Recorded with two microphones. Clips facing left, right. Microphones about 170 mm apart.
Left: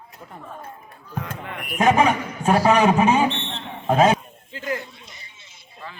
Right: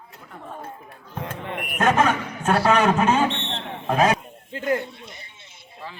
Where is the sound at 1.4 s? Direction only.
25° right (ahead or behind).